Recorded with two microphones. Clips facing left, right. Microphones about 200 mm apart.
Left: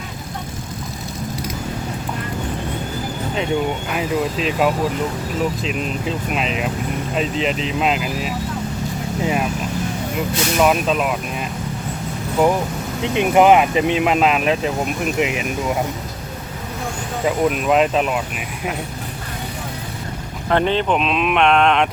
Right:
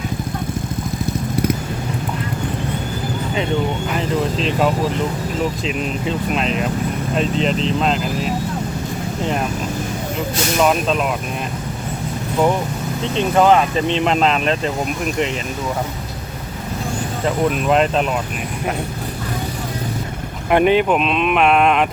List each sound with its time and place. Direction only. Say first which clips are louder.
3.9 s speech: right 1 dB; 5° left (ahead or behind)
10.6 s speech: even; 5° left (ahead or behind)
13.0 s speech: left 2 dB; 15° left (ahead or behind)
17.2 s speech: even; 5° left (ahead or behind)
20.5 s speech: right 4 dB; 15° right (ahead or behind)